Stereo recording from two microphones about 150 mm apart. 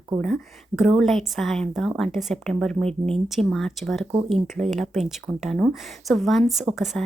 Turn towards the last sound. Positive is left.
turn(degrees=5)  # may be behind; listen again after turning